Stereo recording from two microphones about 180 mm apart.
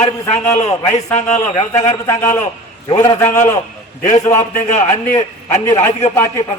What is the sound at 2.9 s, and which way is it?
Speech, 25° left (ahead or behind).